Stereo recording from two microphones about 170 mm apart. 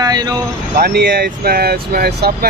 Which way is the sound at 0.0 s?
20° right (ahead or behind).